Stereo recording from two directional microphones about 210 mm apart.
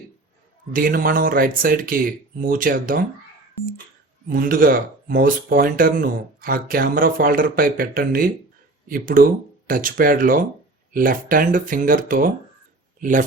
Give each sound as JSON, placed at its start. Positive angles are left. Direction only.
{"t": 0.7, "sound": "speech", "side_deg": -40}
{"t": 4.3, "sound": "a man's voice", "side_deg": -40}